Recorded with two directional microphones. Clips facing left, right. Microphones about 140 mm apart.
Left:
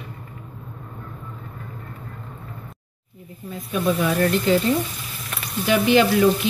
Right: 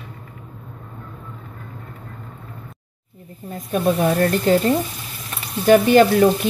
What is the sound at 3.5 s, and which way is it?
Speech, 50° right (ahead or behind).